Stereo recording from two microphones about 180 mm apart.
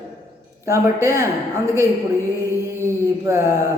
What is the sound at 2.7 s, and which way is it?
Mantra, 15° right (ahead or behind).